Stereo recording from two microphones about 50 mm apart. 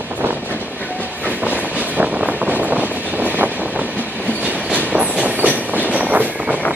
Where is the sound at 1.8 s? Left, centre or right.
Right.